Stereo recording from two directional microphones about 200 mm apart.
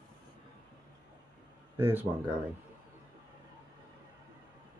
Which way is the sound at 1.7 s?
10° right (ahead or behind).